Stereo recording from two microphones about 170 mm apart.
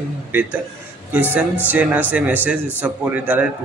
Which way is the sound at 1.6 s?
10° right (ahead or behind).